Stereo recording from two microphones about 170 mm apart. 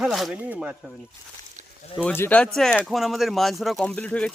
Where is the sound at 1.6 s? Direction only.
45° right (ahead or behind).